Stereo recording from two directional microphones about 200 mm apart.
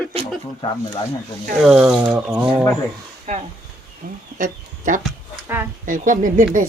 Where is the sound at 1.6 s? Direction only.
10° right (ahead or behind).